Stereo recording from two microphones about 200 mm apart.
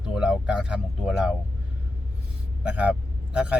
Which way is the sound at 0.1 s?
5° right (ahead or behind).